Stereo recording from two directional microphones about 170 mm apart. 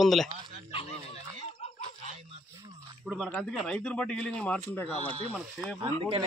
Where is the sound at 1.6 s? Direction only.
40° left (ahead or behind).